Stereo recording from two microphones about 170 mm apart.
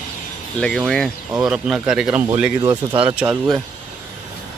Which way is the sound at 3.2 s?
15° right (ahead or behind).